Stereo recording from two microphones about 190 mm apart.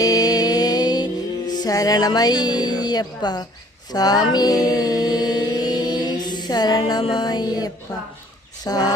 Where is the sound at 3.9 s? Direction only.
20° left (ahead or behind).